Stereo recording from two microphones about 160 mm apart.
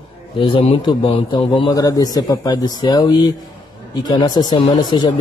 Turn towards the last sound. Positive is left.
turn(degrees=25)  # may be behind; listen again after turning